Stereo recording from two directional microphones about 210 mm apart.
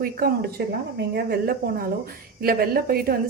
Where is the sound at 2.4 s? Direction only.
45° right (ahead or behind).